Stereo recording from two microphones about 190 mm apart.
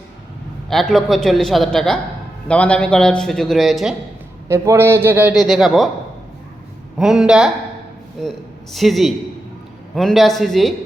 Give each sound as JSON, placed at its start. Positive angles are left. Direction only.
{"t": 0.7, "sound": "a man's voice", "side_deg": 0}
{"t": 4.4, "sound": "a man's voice", "side_deg": -15}
{"t": 7.0, "sound": "a man's voice", "side_deg": 0}